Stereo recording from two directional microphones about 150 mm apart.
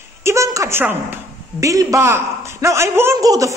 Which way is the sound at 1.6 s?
20° right (ahead or behind).